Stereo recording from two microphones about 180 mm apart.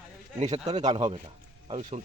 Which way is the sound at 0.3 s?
35° right (ahead or behind).